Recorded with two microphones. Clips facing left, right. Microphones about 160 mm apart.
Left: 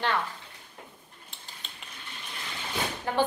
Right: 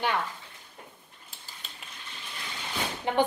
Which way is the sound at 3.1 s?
20° right (ahead or behind).